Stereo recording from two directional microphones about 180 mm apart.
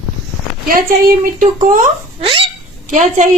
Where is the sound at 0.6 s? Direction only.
55° right (ahead or behind).